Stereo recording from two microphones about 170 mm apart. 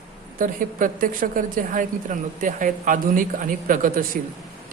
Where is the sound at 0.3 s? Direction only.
50° right (ahead or behind).